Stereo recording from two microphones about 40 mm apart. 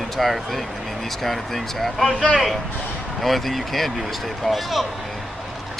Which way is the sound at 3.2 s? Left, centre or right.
Centre.